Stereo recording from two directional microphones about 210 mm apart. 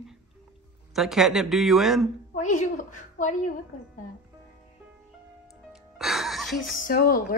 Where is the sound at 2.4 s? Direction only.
35° left (ahead or behind).